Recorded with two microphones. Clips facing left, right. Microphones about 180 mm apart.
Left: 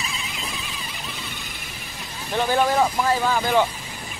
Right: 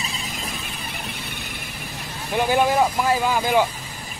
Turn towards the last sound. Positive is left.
turn(degrees=-10)  # may be behind; listen again after turning